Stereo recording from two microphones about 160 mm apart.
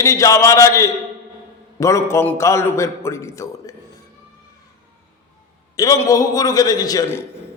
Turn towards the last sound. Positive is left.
turn(degrees=25)  # may be behind; listen again after turning